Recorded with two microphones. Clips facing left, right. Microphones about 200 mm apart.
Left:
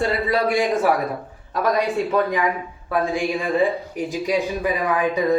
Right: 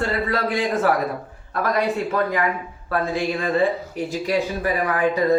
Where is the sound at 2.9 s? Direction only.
15° left (ahead or behind).